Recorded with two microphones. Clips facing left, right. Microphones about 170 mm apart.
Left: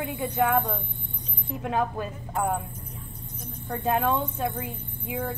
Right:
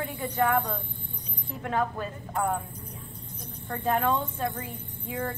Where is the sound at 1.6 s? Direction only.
10° left (ahead or behind).